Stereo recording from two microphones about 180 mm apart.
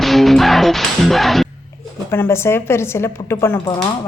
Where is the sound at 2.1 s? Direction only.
15° left (ahead or behind).